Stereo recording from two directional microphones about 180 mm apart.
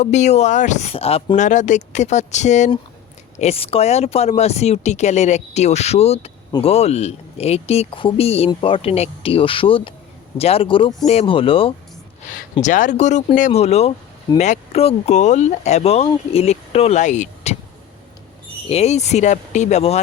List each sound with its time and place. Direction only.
0.0 s speech: 40° left (ahead or behind)
12.3 s speech: 45° left (ahead or behind)
18.7 s speech: 35° left (ahead or behind)